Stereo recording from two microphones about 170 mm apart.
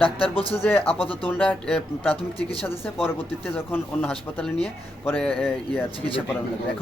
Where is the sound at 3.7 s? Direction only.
10° left (ahead or behind).